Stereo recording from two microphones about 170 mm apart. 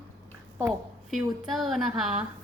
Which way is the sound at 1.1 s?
Centre (ahead or behind).